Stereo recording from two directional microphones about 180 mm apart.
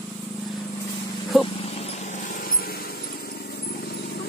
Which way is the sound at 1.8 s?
40° left (ahead or behind).